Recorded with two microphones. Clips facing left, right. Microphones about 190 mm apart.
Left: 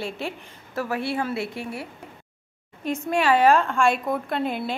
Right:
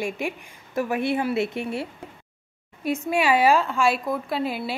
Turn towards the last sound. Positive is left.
turn(degrees=-5)  # may be behind; listen again after turning